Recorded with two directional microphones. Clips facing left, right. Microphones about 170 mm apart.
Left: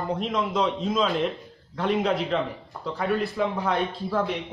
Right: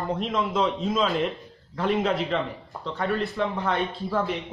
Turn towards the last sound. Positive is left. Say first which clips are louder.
# even
turn(degrees=0)  # may be behind; listen again after turning